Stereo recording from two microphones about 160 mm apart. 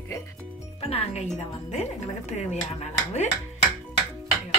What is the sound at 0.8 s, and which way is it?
Speech, 40° left (ahead or behind).